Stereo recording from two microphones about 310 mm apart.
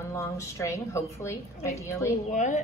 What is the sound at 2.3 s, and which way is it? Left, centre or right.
Speech, left.